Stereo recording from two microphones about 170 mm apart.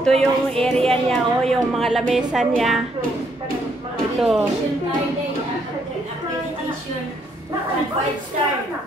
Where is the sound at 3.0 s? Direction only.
60° right (ahead or behind).